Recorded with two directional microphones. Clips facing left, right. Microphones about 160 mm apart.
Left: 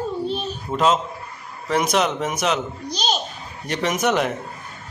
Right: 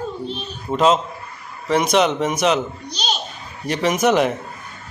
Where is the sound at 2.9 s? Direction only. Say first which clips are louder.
Left 3 dB; 45° left (ahead or behind).